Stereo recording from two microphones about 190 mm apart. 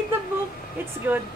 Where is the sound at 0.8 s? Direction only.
10° right (ahead or behind).